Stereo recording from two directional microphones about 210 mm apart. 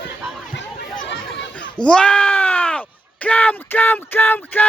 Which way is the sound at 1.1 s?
60° left (ahead or behind).